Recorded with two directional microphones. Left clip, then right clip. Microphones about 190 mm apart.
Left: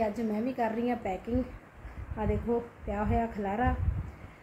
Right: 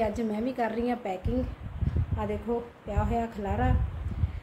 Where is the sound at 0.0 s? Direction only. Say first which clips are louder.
Right 2 dB; centre (ahead or behind).